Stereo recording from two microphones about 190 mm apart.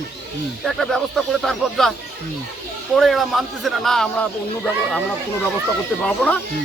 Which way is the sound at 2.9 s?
Centre (ahead or behind).